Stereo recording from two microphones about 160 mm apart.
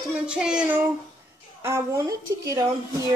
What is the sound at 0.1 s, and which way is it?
A woman's voice, 5° right (ahead or behind).